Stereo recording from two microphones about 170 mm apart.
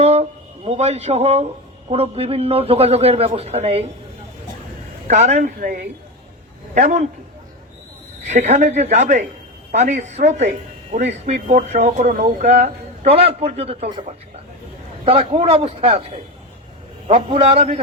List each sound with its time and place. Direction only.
0.0 s a sound: 40° right (ahead or behind)
1.9 s a man's voice: 35° right (ahead or behind)
5.0 s a man's voice: 40° right (ahead or behind)
5.5 s speech: 50° right (ahead or behind)
8.3 s a man's voice: 40° right (ahead or behind)
15.0 s a man's voice: 35° right (ahead or behind)